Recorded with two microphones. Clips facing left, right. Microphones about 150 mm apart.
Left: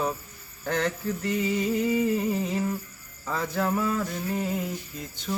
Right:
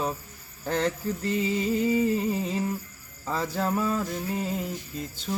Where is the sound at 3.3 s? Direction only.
30° right (ahead or behind).